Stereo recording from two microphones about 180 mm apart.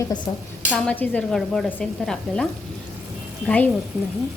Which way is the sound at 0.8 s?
5° left (ahead or behind).